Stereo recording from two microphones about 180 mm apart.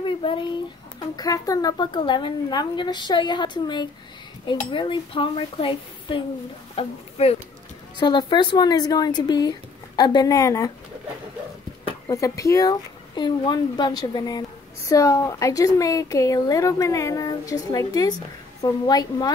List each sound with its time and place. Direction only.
0.0 s a sound: 30° left (ahead or behind)
0.9 s a woman's voice: 20° left (ahead or behind)
12.1 s a woman's voice: 15° left (ahead or behind)